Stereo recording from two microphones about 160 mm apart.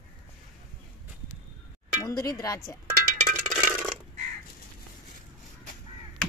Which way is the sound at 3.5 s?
10° right (ahead or behind).